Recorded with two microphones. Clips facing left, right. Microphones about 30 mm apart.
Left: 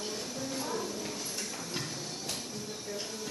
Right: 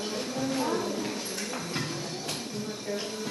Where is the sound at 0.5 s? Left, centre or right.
Right.